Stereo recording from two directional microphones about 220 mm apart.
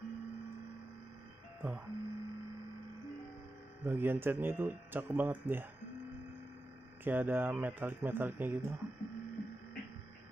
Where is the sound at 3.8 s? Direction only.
10° right (ahead or behind).